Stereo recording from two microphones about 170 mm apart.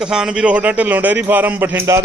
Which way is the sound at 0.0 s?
5° right (ahead or behind).